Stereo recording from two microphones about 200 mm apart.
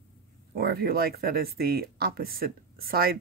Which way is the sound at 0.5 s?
50° right (ahead or behind).